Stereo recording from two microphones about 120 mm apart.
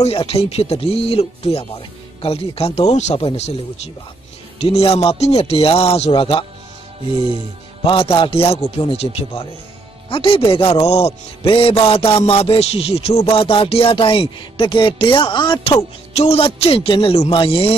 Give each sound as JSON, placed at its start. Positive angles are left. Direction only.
{"t": 0.0, "sound": "speech", "side_deg": 50}
{"t": 6.1, "sound": "a man's voice", "side_deg": 45}
{"t": 7.8, "sound": "a man's voice", "side_deg": 50}
{"t": 13.3, "sound": "a man's voice", "side_deg": 50}
{"t": 16.2, "sound": "a man's voice", "side_deg": 55}